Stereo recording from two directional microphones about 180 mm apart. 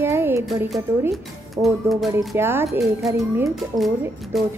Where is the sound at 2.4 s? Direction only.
15° right (ahead or behind).